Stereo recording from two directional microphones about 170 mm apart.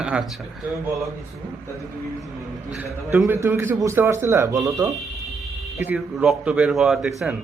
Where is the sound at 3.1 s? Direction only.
15° right (ahead or behind).